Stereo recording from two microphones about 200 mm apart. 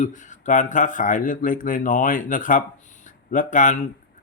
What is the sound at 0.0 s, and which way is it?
Speech, 40° left (ahead or behind).